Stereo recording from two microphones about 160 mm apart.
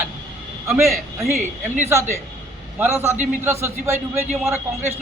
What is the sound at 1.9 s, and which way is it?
A man's voice, 15° right (ahead or behind).